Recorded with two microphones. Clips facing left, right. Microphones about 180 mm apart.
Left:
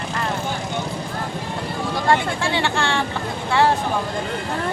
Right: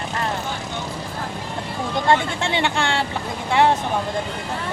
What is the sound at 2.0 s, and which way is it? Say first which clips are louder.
Speech: even; 20° right (ahead or behind).